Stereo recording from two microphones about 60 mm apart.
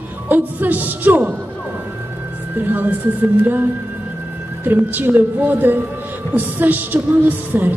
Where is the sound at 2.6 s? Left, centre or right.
Right.